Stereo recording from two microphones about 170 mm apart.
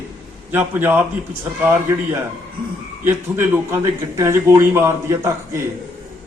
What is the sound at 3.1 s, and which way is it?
A man's voice, 15° right (ahead or behind).